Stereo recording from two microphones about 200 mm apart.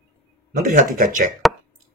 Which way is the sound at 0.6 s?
40° right (ahead or behind).